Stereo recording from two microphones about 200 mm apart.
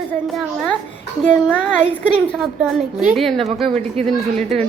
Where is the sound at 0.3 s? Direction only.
5° left (ahead or behind).